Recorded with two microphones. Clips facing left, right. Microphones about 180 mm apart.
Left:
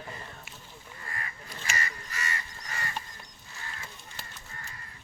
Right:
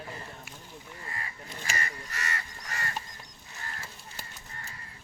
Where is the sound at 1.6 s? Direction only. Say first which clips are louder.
Even; 45° right (ahead or behind).